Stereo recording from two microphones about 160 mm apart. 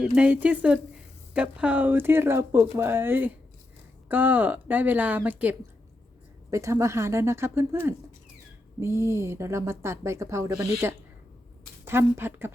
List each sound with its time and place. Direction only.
0.0 s a woman's voice: 10° right (ahead or behind)